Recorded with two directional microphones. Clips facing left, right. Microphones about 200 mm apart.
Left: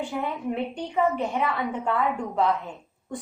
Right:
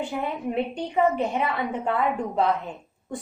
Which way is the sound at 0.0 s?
20° right (ahead or behind).